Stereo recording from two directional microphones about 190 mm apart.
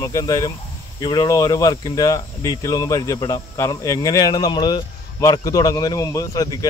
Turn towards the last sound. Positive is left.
turn(degrees=20)  # may be behind; listen again after turning